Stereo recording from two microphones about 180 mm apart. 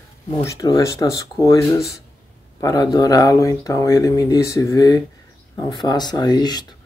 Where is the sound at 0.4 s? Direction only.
20° left (ahead or behind).